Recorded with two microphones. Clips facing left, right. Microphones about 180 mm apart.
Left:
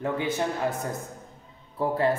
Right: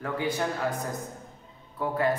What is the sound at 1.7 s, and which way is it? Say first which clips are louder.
Speech: left 2 dB; 30° left (ahead or behind).